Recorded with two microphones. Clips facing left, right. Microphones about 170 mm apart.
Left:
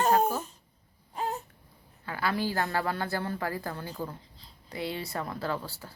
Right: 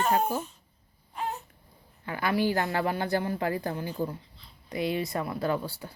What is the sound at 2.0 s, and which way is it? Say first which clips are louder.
Speech: right 4 dB; 20° right (ahead or behind).